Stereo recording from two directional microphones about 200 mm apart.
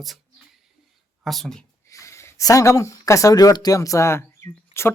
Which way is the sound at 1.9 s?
15° left (ahead or behind).